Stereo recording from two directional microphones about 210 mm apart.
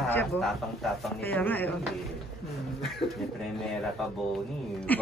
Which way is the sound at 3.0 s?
25° left (ahead or behind).